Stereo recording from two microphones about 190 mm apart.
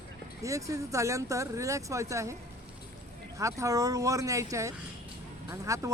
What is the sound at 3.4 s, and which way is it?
Speech, 15° right (ahead or behind).